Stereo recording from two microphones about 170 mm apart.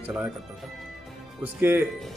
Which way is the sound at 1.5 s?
15° right (ahead or behind).